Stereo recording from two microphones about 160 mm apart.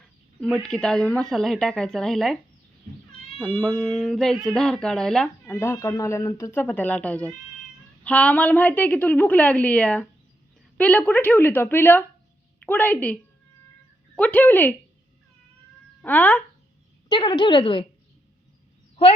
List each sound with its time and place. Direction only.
0.0 s a woman's voice: centre (ahead or behind)
14.2 s a woman's voice: 10° left (ahead or behind)
16.0 s speech: 10° left (ahead or behind)
17.1 s a woman's voice: 30° left (ahead or behind)